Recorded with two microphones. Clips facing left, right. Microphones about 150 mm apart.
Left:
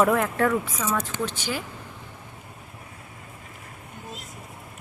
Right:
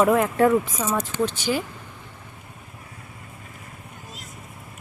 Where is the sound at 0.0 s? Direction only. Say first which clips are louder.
Right 2 dB; 5° right (ahead or behind).